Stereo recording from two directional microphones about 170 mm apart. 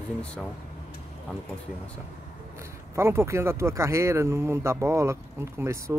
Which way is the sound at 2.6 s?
15° right (ahead or behind).